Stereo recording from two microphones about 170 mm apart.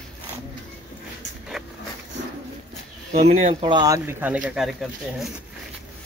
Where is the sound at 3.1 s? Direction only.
40° right (ahead or behind).